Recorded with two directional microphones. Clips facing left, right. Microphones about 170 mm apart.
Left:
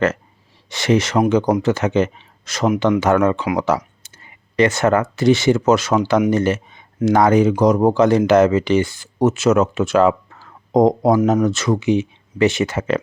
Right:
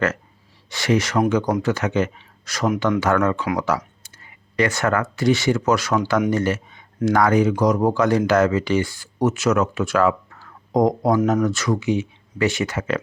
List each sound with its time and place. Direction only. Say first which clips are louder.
0.7 s speech: left 3 dB; 25° left (ahead or behind)